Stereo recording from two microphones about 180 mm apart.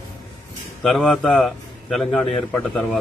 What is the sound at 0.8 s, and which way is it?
A man's voice, 5° left (ahead or behind).